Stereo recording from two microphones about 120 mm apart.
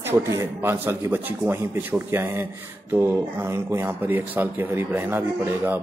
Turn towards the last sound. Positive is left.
turn(degrees=-20)  # may be behind; listen again after turning